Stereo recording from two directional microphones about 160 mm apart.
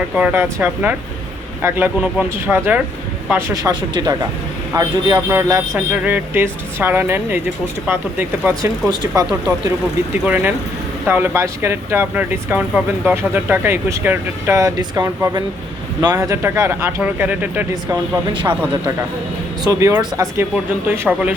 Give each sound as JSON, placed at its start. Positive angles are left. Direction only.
{"t": 0.1, "sound": "speech", "side_deg": -10}
{"t": 17.9, "sound": "speech", "side_deg": -30}
{"t": 19.6, "sound": "speech", "side_deg": -20}